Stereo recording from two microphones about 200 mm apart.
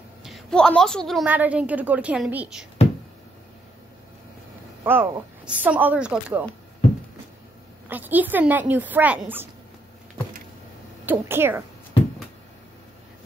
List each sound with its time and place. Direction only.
0.2 s a woman's voice: centre (ahead or behind)
4.8 s a woman's voice: 10° right (ahead or behind)
7.9 s a woman's voice: 10° right (ahead or behind)
11.1 s a woman's voice: 10° right (ahead or behind)